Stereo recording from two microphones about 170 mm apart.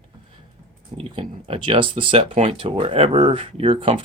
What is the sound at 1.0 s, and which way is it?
Speech, 30° right (ahead or behind).